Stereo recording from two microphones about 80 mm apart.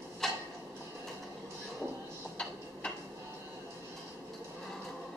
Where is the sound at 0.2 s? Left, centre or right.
Centre.